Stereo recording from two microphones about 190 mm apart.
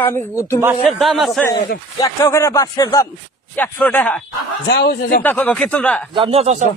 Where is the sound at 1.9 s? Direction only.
15° left (ahead or behind).